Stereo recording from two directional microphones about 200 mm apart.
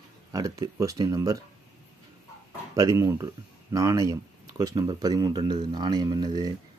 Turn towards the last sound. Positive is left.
turn(degrees=-20)  # may be behind; listen again after turning